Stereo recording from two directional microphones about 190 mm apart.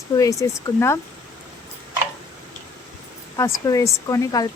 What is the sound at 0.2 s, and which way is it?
Speech, 15° left (ahead or behind).